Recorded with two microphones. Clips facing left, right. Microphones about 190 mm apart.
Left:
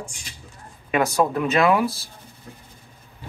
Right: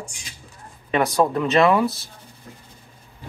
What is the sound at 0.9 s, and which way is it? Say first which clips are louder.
Speech: right 1 dB; 10° left (ahead or behind).